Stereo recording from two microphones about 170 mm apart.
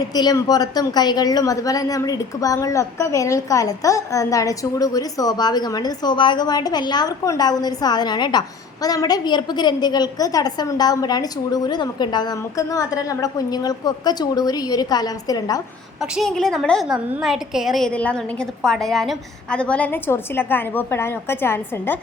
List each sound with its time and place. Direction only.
0.1 s a woman's voice: 25° left (ahead or behind)
16.0 s a woman's voice: centre (ahead or behind)